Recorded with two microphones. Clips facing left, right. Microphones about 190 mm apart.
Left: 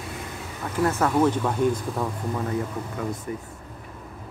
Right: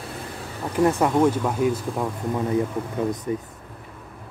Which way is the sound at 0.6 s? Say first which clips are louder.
Right 4 dB; 15° right (ahead or behind).